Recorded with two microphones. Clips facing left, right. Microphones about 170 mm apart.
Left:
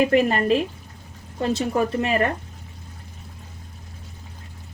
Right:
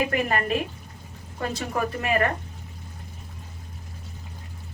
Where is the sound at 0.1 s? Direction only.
25° left (ahead or behind).